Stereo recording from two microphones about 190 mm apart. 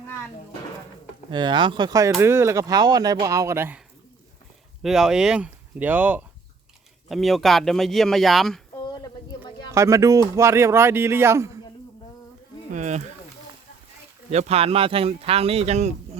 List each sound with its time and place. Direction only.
1.3 s speech: 25° right (ahead or behind)
4.8 s speech: centre (ahead or behind)
8.9 s a sound: 20° left (ahead or behind)
9.7 s speech: 15° right (ahead or behind)
12.7 s speech: 40° right (ahead or behind)
14.3 s speech: 35° right (ahead or behind)